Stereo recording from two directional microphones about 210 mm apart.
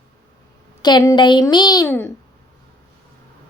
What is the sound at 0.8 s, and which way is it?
A child's voice, 20° left (ahead or behind).